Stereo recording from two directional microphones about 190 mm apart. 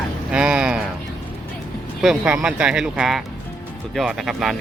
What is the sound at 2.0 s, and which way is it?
Speech, 5° right (ahead or behind).